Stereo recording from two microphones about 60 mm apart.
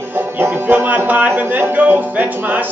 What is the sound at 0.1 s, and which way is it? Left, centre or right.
Speech, right.